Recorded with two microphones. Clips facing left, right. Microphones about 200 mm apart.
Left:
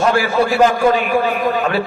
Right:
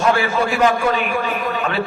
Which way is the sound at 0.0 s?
35° left (ahead or behind).